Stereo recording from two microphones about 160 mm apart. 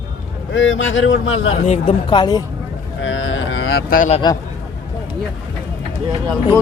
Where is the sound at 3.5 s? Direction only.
90° left.